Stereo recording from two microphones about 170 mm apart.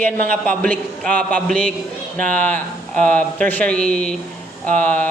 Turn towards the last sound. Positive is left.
turn(degrees=10)  # may be behind; listen again after turning